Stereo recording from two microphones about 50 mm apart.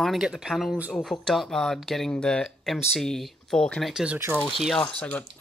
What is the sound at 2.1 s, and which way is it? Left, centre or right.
Speech, centre.